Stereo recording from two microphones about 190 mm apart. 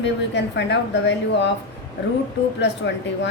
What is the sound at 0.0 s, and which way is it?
A woman's voice, 70° left (ahead or behind).